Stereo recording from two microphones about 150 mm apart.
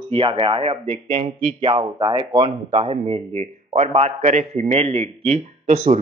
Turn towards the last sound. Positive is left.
turn(degrees=-50)  # may be behind; listen again after turning